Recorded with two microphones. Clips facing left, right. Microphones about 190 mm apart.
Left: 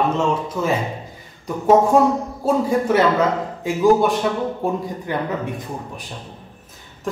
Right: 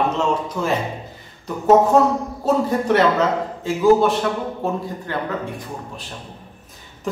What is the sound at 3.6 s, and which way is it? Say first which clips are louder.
A man's voice: even; 15° left (ahead or behind).